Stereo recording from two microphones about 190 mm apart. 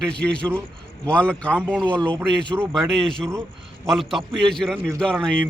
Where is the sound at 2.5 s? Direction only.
10° right (ahead or behind).